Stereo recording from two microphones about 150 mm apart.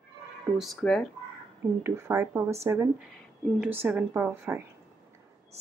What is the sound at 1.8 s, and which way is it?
Speech, 15° right (ahead or behind).